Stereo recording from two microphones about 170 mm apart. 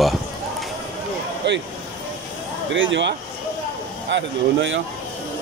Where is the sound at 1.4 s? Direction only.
90° right.